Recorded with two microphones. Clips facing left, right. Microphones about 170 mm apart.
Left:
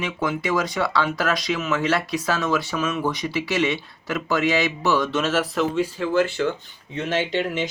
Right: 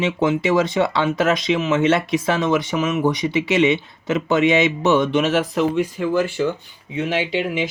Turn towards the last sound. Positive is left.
turn(degrees=-10)  # may be behind; listen again after turning